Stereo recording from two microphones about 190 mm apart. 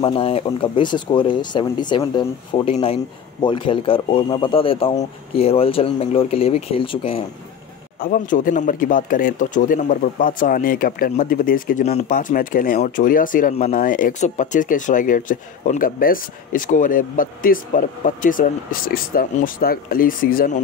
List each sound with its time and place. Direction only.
0.0 s speech: 30° left (ahead or behind)
8.0 s speech: 45° left (ahead or behind)